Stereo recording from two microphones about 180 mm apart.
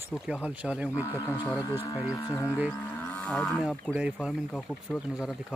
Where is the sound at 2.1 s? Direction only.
20° left (ahead or behind).